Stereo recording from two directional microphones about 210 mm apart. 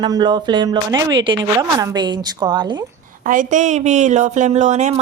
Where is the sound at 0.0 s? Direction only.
20° right (ahead or behind).